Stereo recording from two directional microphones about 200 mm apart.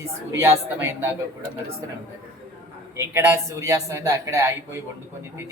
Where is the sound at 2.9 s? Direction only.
10° right (ahead or behind).